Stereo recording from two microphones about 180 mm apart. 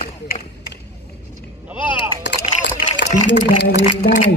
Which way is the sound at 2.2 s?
75° left (ahead or behind).